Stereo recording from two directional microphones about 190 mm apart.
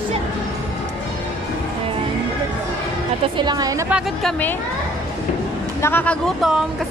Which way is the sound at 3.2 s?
20° right (ahead or behind).